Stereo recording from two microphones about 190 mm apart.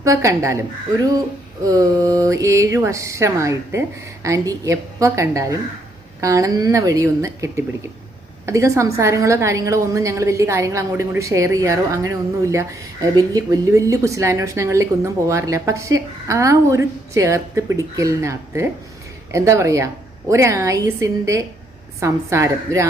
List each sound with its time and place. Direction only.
0.0 s a woman's voice: 15° right (ahead or behind)